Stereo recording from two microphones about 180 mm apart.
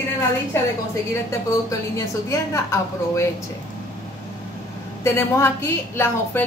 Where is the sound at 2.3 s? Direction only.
15° left (ahead or behind).